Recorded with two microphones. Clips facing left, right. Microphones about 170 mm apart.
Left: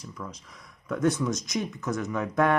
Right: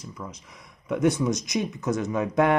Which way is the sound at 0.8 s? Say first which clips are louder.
Right 3 dB; 15° right (ahead or behind).